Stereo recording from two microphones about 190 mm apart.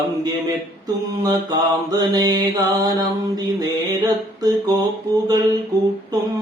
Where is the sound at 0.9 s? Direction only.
20° right (ahead or behind).